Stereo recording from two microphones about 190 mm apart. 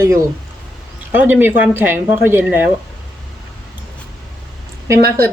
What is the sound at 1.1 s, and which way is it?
Speech, 10° right (ahead or behind).